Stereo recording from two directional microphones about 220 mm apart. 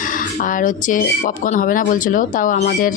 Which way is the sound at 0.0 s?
35° left (ahead or behind).